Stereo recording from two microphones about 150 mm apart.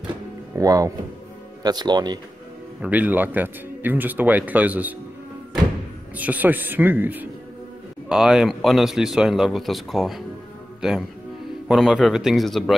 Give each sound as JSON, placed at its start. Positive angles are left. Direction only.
{"t": 0.6, "sound": "speech", "side_deg": -25}
{"t": 2.8, "sound": "speech", "side_deg": -10}
{"t": 6.1, "sound": "a man's voice", "side_deg": -10}